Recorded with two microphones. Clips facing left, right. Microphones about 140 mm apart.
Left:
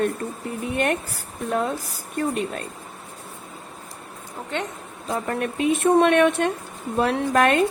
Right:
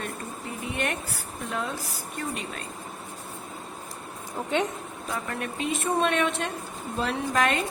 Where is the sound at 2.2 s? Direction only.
50° left (ahead or behind).